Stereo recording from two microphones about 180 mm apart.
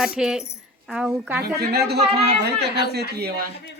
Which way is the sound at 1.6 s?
60° right (ahead or behind).